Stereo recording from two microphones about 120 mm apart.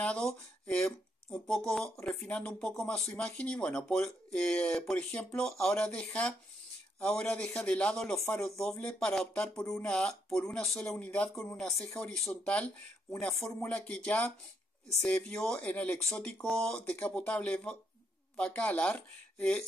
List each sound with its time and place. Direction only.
0.0 s speech: 10° left (ahead or behind)
13.1 s speech: 20° left (ahead or behind)
13.6 s speech: 10° left (ahead or behind)